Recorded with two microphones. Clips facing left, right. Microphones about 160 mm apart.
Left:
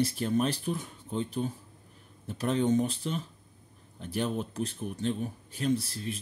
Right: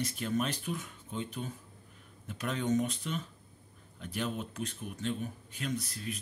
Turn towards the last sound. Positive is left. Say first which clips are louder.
# left 7 dB
turn(degrees=30)  # may be behind; listen again after turning